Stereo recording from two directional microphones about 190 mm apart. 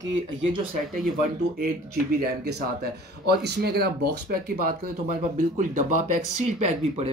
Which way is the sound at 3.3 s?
60° right (ahead or behind).